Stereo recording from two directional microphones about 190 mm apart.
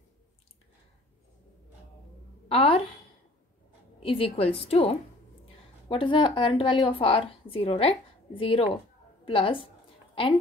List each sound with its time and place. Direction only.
2.4 s a woman's voice: 30° left (ahead or behind)
4.0 s a woman's voice: 30° left (ahead or behind)